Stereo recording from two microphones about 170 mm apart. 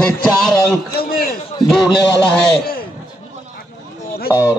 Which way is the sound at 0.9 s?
60° left (ahead or behind).